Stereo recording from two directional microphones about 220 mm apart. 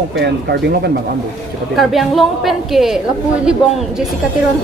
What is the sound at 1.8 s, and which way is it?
A woman's voice, centre (ahead or behind).